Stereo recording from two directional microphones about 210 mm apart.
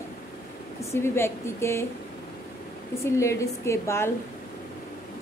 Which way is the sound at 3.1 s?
15° left (ahead or behind).